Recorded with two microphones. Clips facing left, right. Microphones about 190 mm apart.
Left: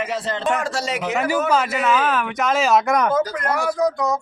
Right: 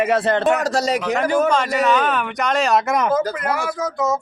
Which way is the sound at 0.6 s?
40° right (ahead or behind).